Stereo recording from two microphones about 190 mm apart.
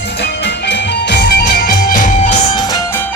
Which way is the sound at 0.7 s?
60° left (ahead or behind).